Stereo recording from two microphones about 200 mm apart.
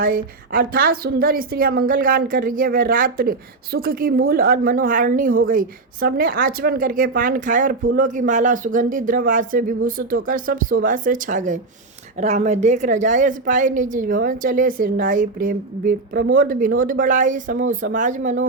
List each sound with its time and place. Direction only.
0.0 s a woman's voice: 45° right (ahead or behind)